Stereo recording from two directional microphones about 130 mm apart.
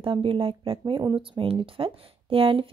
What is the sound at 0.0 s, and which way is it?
Speech, 40° right (ahead or behind).